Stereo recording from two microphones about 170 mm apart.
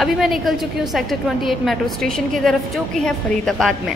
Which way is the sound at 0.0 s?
Centre (ahead or behind).